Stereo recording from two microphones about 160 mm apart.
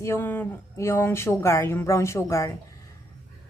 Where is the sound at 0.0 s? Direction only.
15° left (ahead or behind).